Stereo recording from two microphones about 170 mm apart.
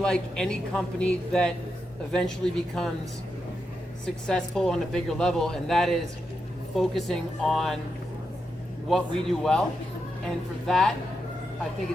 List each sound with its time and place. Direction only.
0.0 s a woman's voice: 5° left (ahead or behind)
4.0 s a woman's voice: 5° left (ahead or behind)
8.9 s a woman's voice: centre (ahead or behind)
10.7 s a woman's voice: 5° left (ahead or behind)